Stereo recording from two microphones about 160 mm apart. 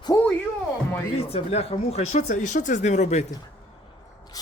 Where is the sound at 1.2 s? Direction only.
40° left (ahead or behind).